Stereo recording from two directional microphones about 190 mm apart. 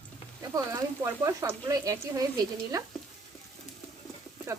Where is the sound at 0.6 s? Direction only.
15° right (ahead or behind).